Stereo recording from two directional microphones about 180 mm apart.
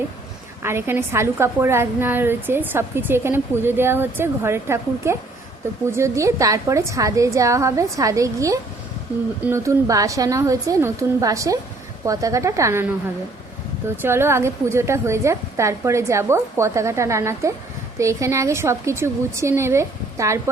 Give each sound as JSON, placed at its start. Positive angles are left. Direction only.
{"t": 0.6, "sound": "a woman's voice", "side_deg": -15}
{"t": 13.8, "sound": "a woman's voice", "side_deg": -10}